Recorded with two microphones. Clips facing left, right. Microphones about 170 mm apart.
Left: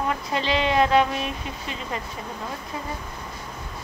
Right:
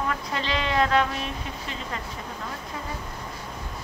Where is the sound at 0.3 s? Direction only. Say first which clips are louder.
Left 7 dB; 20° left (ahead or behind).